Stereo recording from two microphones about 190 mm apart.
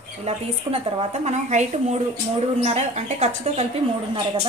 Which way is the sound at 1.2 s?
35° right (ahead or behind).